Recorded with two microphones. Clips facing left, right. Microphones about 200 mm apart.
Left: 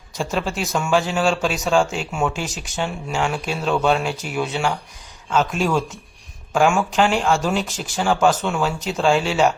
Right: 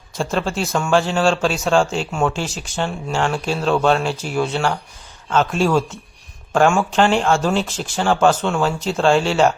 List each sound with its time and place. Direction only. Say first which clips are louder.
0.2 s speech: right 2 dB; 5° left (ahead or behind)